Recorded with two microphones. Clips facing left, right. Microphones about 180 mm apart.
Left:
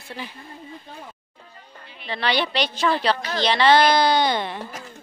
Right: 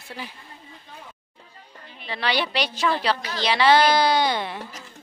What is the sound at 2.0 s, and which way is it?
A woman's voice, 5° right (ahead or behind).